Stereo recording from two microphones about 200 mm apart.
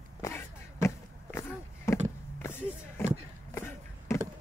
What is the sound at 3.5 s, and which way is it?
Chop, 10° left (ahead or behind).